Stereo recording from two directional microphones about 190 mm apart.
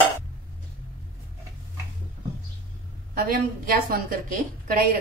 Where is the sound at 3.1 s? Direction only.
50° right (ahead or behind).